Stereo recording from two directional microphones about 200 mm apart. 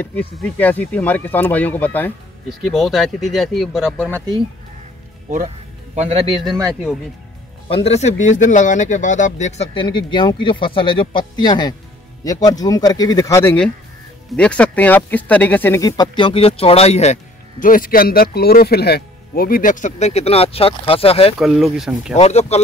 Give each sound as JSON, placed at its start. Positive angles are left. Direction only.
{"t": 0.0, "sound": "speech", "side_deg": 10}
{"t": 5.9, "sound": "a man's voice", "side_deg": -30}
{"t": 6.7, "sound": "speech", "side_deg": 0}
{"t": 7.6, "sound": "speech", "side_deg": 30}
{"t": 21.4, "sound": "speech", "side_deg": 0}
{"t": 22.1, "sound": "speech", "side_deg": 35}